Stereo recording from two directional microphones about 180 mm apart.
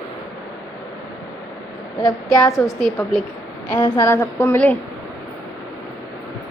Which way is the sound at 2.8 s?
5° left (ahead or behind).